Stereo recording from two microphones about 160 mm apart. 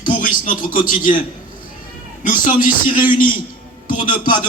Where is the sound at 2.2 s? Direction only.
55° left (ahead or behind).